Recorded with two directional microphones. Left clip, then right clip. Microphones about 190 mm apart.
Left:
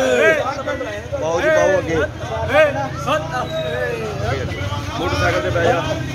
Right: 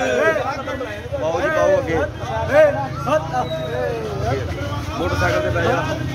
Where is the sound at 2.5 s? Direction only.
30° right (ahead or behind).